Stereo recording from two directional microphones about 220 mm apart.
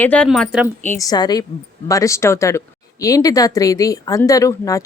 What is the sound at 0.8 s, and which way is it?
Speech, 10° left (ahead or behind).